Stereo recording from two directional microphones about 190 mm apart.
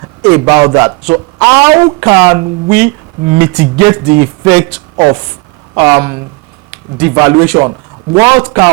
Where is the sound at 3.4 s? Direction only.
15° right (ahead or behind).